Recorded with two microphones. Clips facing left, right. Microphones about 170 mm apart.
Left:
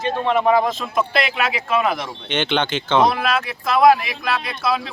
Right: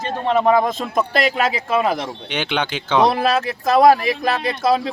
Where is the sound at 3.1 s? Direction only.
40° right (ahead or behind).